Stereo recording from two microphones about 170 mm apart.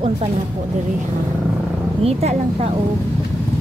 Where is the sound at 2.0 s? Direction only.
35° right (ahead or behind).